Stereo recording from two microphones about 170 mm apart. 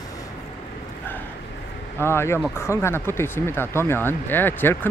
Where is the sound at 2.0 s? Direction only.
15° left (ahead or behind).